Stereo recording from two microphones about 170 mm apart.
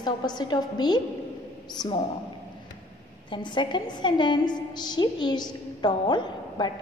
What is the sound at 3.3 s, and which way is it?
A woman's voice, 25° left (ahead or behind).